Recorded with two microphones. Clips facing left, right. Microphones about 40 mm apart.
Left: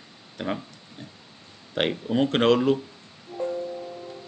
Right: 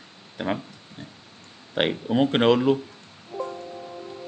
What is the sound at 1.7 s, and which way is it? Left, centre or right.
Speech, centre.